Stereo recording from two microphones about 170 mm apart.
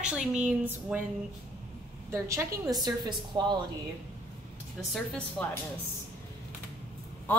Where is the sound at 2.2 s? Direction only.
20° right (ahead or behind).